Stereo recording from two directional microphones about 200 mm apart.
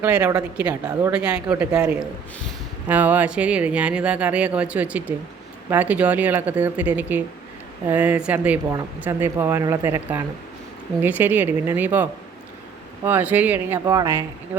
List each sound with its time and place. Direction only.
0.0 s speech: 10° right (ahead or behind)
13.1 s speech: 10° right (ahead or behind)